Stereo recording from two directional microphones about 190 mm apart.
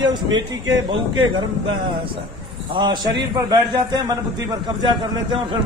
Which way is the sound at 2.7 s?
25° right (ahead or behind).